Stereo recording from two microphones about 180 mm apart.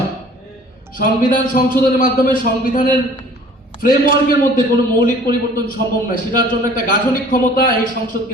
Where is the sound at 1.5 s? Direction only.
50° left (ahead or behind).